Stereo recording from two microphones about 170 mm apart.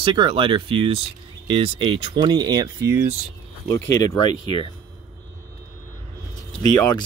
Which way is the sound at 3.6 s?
15° left (ahead or behind).